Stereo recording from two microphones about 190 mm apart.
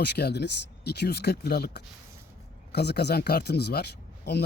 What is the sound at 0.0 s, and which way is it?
Speech, 60° left (ahead or behind).